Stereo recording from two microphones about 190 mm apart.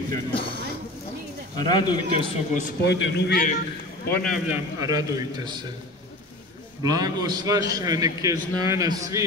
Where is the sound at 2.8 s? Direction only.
65° left (ahead or behind).